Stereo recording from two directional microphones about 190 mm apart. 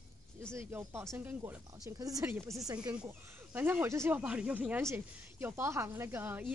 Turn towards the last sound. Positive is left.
turn(degrees=-10)  # may be behind; listen again after turning